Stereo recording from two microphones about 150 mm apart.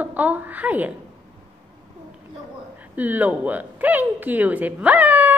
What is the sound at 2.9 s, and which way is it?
A woman's voice, 10° right (ahead or behind).